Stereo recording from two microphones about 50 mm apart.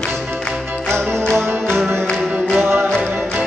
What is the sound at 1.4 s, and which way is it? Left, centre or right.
Music, right.